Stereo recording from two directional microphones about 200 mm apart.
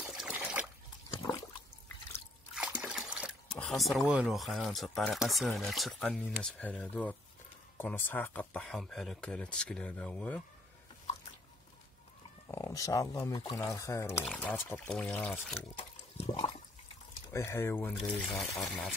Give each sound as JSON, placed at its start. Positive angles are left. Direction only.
{"t": 0.0, "sound": "trickle", "side_deg": 0}
{"t": 2.5, "sound": "water", "side_deg": 0}
{"t": 3.5, "sound": "speech", "side_deg": 5}
{"t": 12.4, "sound": "speech", "side_deg": 15}
{"t": 16.2, "sound": "toilet flush", "side_deg": 30}
{"t": 17.3, "sound": "speech", "side_deg": 15}